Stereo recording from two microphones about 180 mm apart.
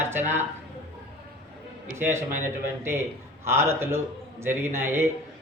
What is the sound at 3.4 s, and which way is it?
Speech, 15° right (ahead or behind).